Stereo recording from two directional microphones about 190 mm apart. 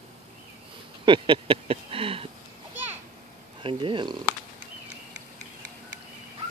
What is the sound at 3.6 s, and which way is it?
Speech, 25° right (ahead or behind).